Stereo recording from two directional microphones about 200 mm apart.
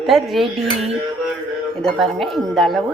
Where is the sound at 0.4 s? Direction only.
30° right (ahead or behind).